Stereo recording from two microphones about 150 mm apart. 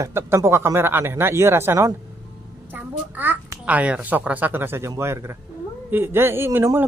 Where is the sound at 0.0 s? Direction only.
20° right (ahead or behind).